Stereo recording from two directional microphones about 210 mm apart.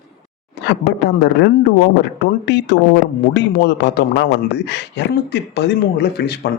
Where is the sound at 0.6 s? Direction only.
55° left (ahead or behind).